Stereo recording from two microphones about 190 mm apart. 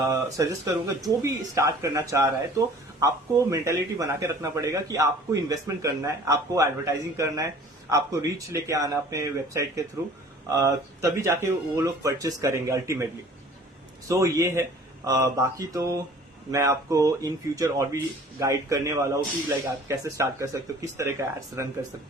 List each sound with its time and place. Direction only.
0.0 s a man's voice: 15° right (ahead or behind)
14.1 s a man's voice: 15° right (ahead or behind)